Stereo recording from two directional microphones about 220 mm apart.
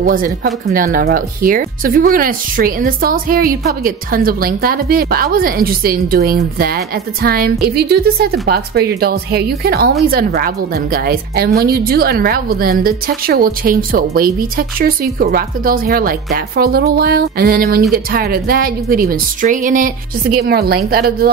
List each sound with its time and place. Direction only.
0.0 s a woman's voice: 40° right (ahead or behind)